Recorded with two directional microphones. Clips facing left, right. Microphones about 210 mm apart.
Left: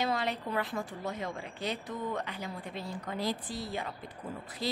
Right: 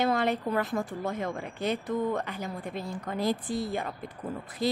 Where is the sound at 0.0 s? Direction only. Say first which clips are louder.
Right 6 dB; 50° right (ahead or behind).